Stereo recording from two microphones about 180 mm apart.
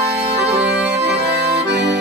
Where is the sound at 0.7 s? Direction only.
65° right (ahead or behind).